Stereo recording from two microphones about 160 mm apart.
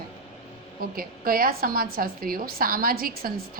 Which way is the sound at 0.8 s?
65° right (ahead or behind).